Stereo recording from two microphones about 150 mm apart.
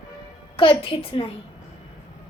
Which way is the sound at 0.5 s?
35° left (ahead or behind).